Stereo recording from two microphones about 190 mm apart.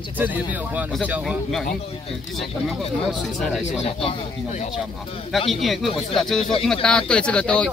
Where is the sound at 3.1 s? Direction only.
Centre (ahead or behind).